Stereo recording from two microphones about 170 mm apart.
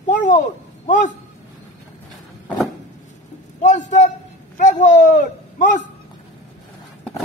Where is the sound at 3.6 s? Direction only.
45° left (ahead or behind).